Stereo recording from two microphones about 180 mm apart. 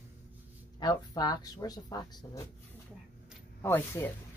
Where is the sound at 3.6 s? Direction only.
15° left (ahead or behind).